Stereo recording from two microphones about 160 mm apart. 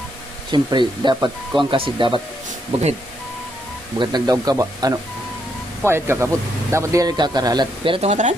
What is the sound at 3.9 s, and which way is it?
Speech, 25° right (ahead or behind).